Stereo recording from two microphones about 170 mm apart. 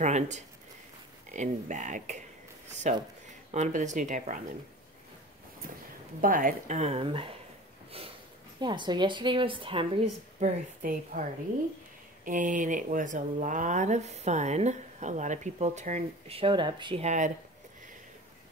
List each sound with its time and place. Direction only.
0.0 s speech: 45° right (ahead or behind)
6.2 s speech: 55° right (ahead or behind); by 7.3 s 30° right (ahead or behind)
8.5 s a woman's voice: 25° right (ahead or behind)
10.8 s speech: 50° right (ahead or behind)
12.3 s speech: 50° right (ahead or behind); by 17.0 s 30° right (ahead or behind)
17.0 s speech: 45° right (ahead or behind)